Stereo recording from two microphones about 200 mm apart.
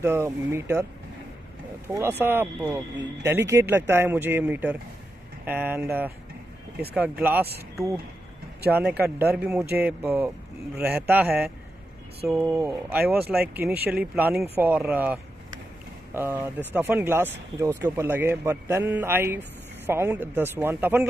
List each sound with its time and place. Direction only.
0.0 s speech: 10° right (ahead or behind)
2.0 s speech: 10° right (ahead or behind)
8.7 s speech: 5° right (ahead or behind)
13.2 s speech: 50° right (ahead or behind)
13.8 s speech: 5° right (ahead or behind)